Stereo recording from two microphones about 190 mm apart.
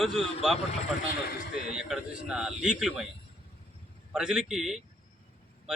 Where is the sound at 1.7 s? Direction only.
5° right (ahead or behind).